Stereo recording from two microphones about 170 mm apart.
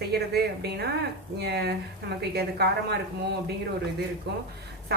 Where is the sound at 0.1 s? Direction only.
70° right (ahead or behind).